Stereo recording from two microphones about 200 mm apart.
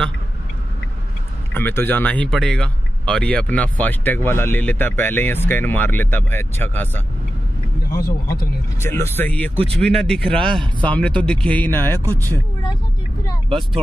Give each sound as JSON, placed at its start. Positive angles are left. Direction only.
{"t": 1.5, "sound": "speech", "side_deg": 10}
{"t": 7.9, "sound": "speech", "side_deg": 50}
{"t": 8.7, "sound": "a man's voice", "side_deg": 10}